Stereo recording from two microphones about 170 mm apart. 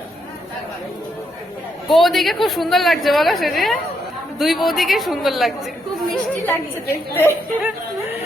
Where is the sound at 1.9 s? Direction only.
Centre (ahead or behind).